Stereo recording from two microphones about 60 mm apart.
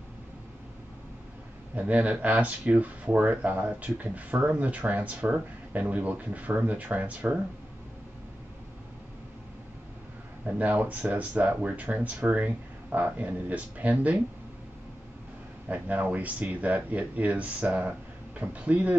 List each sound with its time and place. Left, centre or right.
1.8 s speech: right
10.4 s speech: right
15.7 s speech: right